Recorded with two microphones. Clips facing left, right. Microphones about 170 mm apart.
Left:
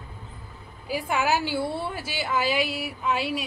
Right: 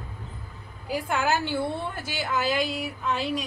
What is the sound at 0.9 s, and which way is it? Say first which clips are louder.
A woman's voice: left 1 dB; 5° left (ahead or behind).